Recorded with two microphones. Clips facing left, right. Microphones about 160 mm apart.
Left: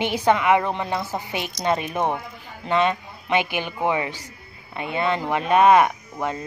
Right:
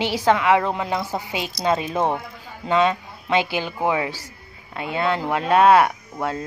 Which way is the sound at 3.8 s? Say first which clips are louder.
Even; 10° right (ahead or behind).